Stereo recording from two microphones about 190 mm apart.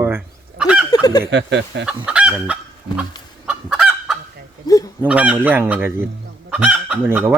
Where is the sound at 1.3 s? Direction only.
65° right (ahead or behind).